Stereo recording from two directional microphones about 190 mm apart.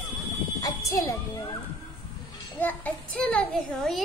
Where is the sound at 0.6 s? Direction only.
20° left (ahead or behind).